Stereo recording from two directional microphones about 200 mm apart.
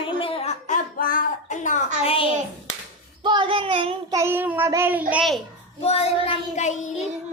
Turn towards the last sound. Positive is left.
turn(degrees=35)  # may be behind; listen again after turning